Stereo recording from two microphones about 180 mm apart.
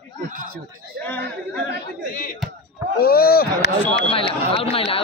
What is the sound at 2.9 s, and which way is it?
Speech, 55° left (ahead or behind).